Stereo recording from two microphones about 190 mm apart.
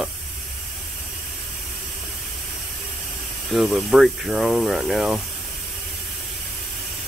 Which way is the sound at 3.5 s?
Centre (ahead or behind).